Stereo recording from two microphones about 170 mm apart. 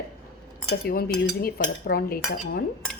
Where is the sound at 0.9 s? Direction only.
60° left (ahead or behind).